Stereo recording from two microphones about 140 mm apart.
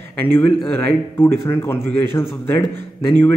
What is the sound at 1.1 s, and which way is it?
Speech, 15° left (ahead or behind).